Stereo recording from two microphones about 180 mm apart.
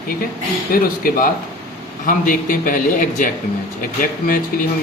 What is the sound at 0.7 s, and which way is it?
Speech, 50° left (ahead or behind).